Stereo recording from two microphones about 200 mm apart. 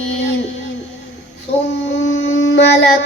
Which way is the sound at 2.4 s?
60° left (ahead or behind).